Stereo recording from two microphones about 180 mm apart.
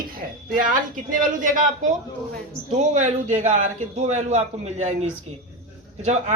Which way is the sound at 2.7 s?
40° right (ahead or behind).